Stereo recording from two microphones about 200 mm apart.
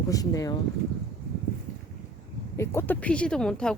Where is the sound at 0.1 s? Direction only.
15° left (ahead or behind).